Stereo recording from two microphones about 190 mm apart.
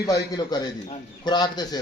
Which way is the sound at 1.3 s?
20° left (ahead or behind).